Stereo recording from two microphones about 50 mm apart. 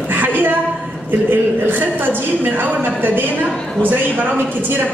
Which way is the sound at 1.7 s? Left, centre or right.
Right.